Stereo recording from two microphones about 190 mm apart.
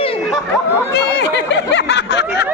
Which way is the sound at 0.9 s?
65° left (ahead or behind).